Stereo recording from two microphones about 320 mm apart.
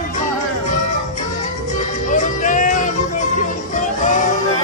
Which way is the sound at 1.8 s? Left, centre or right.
Left.